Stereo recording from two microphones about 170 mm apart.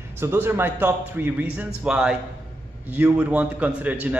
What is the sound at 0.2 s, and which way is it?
A man's voice, 15° right (ahead or behind).